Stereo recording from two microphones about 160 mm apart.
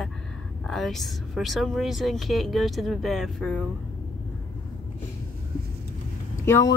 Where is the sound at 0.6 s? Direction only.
Centre (ahead or behind).